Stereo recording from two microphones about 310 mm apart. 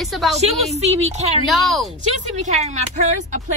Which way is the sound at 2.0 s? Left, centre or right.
Right.